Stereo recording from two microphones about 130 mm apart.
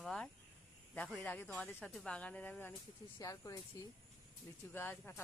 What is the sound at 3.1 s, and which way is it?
Speech, 25° left (ahead or behind).